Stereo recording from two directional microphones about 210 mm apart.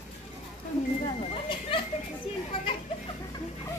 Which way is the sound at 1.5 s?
25° left (ahead or behind).